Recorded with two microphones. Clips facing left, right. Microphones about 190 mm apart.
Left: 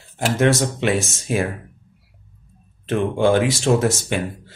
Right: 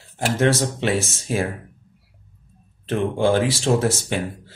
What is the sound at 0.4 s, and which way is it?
Speech, 30° right (ahead or behind).